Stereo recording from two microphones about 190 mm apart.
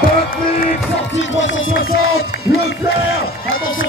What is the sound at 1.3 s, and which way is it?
Speech, 85° left.